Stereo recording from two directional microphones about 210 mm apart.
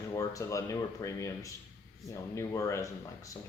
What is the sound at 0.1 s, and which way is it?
Speech, 15° left (ahead or behind).